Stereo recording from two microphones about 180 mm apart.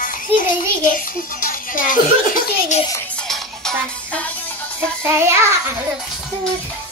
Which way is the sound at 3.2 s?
5° left (ahead or behind).